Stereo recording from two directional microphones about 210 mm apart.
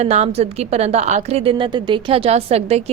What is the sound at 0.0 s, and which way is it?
A woman's voice, 30° right (ahead or behind).